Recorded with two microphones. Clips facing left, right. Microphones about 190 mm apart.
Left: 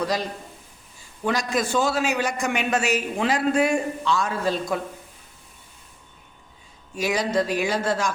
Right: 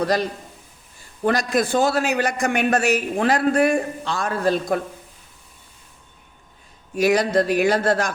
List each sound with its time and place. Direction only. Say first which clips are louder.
1.2 s a man's voice: right 4 dB; 60° right (ahead or behind)
6.9 s a man's voice: right 5 dB; 65° right (ahead or behind)